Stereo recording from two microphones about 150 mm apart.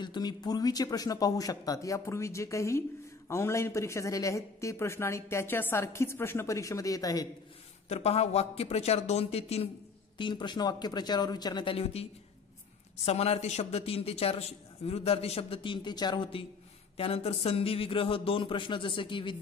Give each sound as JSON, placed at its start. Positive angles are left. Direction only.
{"t": 0.0, "sound": "speech", "side_deg": 30}
{"t": 7.9, "sound": "speech", "side_deg": 45}
{"t": 10.1, "sound": "speech", "side_deg": 30}